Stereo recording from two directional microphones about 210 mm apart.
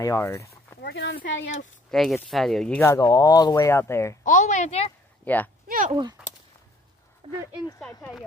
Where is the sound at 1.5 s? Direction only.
35° left (ahead or behind).